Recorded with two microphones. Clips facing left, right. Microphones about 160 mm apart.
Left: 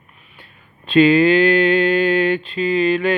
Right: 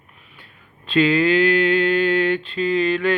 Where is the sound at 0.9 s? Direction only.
20° left (ahead or behind).